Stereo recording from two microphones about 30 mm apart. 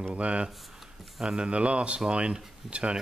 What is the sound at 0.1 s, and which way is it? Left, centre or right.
Speech, right.